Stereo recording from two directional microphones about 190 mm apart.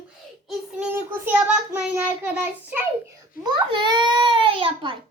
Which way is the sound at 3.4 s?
25° right (ahead or behind).